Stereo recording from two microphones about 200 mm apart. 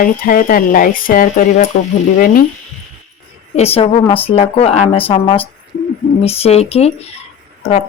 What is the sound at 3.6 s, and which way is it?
A woman's voice, 30° left (ahead or behind).